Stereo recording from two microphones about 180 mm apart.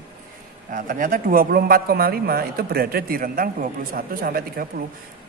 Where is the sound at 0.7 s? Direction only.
50° right (ahead or behind).